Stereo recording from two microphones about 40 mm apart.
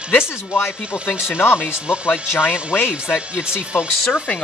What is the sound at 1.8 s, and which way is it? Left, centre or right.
Speech, right.